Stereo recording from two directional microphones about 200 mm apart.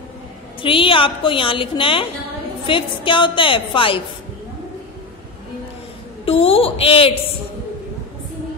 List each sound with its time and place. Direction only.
0.6 s a woman's voice: 25° left (ahead or behind)
6.2 s a woman's voice: 30° left (ahead or behind)